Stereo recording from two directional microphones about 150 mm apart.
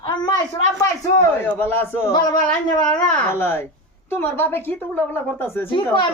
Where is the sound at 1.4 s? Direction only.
10° left (ahead or behind).